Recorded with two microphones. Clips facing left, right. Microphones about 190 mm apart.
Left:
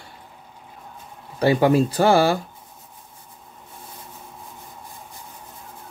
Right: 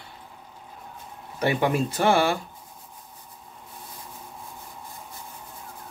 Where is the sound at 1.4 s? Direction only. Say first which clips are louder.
Left 6 dB; 35° left (ahead or behind).